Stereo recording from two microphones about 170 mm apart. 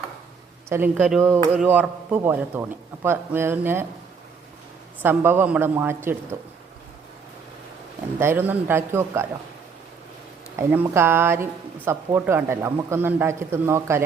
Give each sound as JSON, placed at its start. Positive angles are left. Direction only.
{"t": 0.7, "sound": "a man's voice", "side_deg": -15}
{"t": 5.0, "sound": "a man's voice", "side_deg": -15}
{"t": 8.2, "sound": "a man's voice", "side_deg": -10}
{"t": 10.6, "sound": "a man's voice", "side_deg": -15}